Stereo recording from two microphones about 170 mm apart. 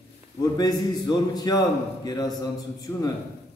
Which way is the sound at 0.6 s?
25° left (ahead or behind).